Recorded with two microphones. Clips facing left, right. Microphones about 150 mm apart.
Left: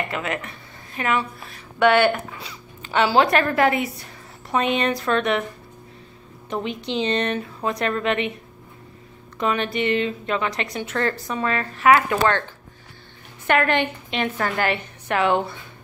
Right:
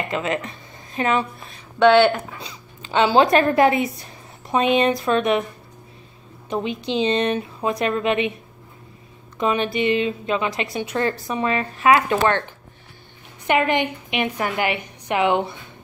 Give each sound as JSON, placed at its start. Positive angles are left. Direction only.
{"t": 0.1, "sound": "a woman's voice", "side_deg": -20}
{"t": 6.5, "sound": "a woman's voice", "side_deg": -15}
{"t": 9.4, "sound": "a woman's voice", "side_deg": -15}
{"t": 13.5, "sound": "a woman's voice", "side_deg": -15}